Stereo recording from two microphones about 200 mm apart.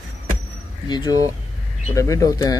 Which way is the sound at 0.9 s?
20° left (ahead or behind).